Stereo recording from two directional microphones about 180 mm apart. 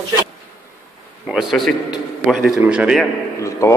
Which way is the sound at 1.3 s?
Centre (ahead or behind).